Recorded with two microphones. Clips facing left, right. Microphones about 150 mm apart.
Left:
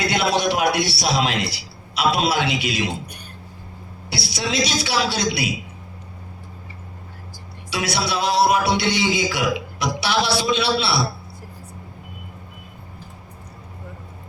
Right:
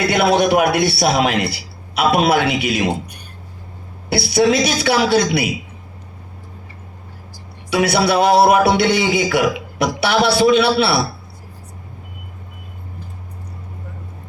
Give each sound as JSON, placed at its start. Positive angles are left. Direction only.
{"t": 0.1, "sound": "a man's voice", "side_deg": -55}
{"t": 4.1, "sound": "a man's voice", "side_deg": -55}
{"t": 7.7, "sound": "a man's voice", "side_deg": -55}